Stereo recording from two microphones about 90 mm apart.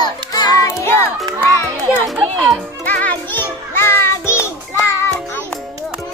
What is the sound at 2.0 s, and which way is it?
Music, centre (ahead or behind).